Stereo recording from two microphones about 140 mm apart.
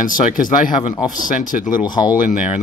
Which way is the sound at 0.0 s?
75° left (ahead or behind).